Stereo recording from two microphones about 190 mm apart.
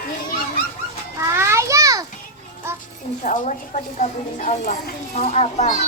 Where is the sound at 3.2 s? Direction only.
40° left (ahead or behind).